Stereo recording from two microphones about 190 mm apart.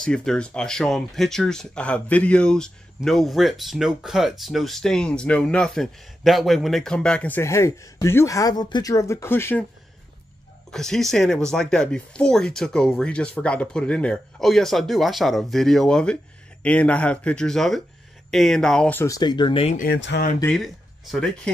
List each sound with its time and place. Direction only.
0.0 s speech: 5° left (ahead or behind)
10.7 s speech: centre (ahead or behind); by 19.7 s 25° left (ahead or behind)
20.0 s speech: 65° left (ahead or behind)
20.4 s speech: centre (ahead or behind)